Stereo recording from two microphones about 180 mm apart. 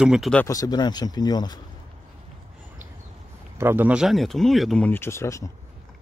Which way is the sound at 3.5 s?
10° right (ahead or behind).